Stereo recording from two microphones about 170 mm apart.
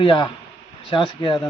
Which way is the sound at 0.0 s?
30° left (ahead or behind).